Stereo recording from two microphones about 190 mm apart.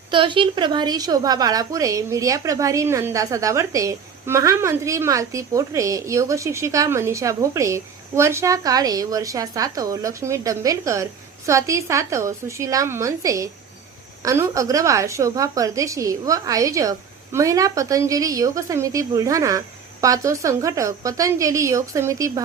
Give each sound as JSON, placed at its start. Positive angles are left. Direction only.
{"t": 0.1, "sound": "a woman's voice", "side_deg": -25}